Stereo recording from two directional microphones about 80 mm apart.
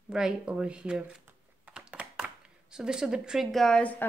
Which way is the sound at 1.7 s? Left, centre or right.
Centre.